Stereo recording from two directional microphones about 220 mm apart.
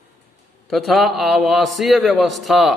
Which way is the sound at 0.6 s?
Centre (ahead or behind).